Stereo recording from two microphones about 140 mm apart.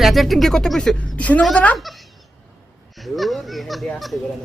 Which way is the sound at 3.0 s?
Centre (ahead or behind).